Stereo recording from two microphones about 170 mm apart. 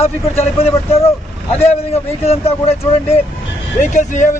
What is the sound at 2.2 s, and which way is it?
Speech, 35° left (ahead or behind).